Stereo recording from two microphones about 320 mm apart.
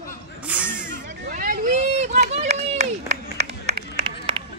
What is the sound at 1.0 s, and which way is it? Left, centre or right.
Run, right.